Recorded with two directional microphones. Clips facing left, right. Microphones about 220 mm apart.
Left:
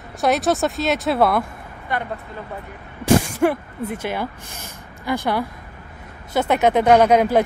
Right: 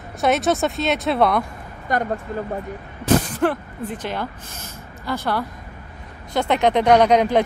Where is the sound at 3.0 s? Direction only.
10° left (ahead or behind).